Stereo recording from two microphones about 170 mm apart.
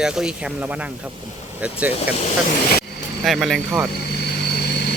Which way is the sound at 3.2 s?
Centre (ahead or behind).